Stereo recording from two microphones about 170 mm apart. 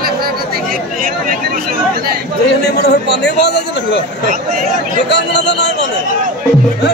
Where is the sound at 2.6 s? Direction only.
80° left.